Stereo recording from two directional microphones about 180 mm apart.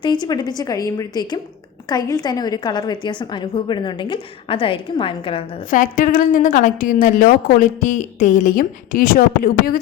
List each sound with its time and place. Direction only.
0.0 s a woman's voice: 25° left (ahead or behind)
5.7 s a woman's voice: 45° left (ahead or behind)